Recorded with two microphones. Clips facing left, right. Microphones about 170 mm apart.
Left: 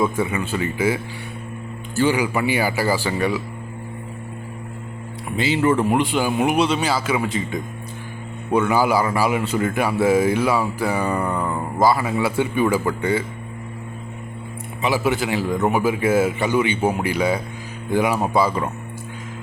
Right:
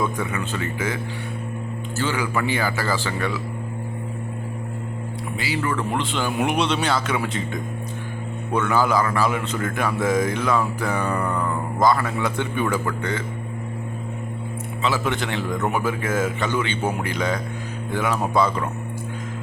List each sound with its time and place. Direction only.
0.0 s a man's voice: 10° left (ahead or behind)
2.0 s a man's voice: 15° left (ahead or behind)
5.4 s a man's voice: 25° left (ahead or behind)
14.8 s a man's voice: 15° left (ahead or behind)